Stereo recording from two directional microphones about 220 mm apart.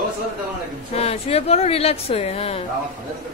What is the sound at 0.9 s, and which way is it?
Speech, 30° left (ahead or behind).